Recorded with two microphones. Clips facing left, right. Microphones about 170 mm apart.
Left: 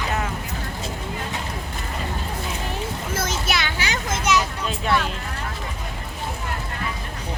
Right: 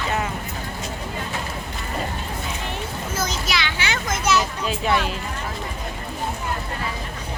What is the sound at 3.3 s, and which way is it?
Speech, 50° left (ahead or behind).